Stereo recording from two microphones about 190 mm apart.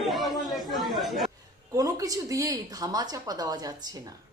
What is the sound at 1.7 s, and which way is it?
Speech, 20° right (ahead or behind).